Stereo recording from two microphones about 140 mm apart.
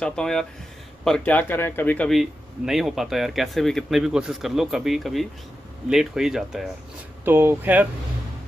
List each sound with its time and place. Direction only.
0.0 s speech: 5° left (ahead or behind)
2.0 s speech: centre (ahead or behind)
7.2 s speech: 15° right (ahead or behind)